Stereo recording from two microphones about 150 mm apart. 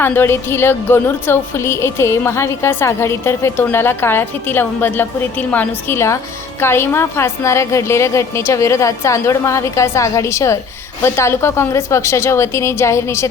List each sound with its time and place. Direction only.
0.0 s a woman's voice: 15° left (ahead or behind)